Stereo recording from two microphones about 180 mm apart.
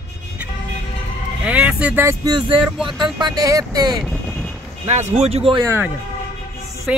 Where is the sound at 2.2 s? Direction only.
25° right (ahead or behind).